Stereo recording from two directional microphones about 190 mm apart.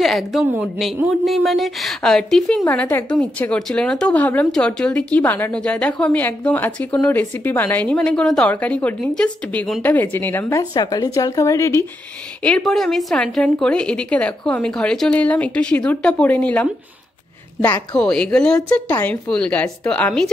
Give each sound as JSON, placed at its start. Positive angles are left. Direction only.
{"t": 0.0, "sound": "a woman's voice", "side_deg": 0}
{"t": 12.4, "sound": "a woman's voice", "side_deg": 5}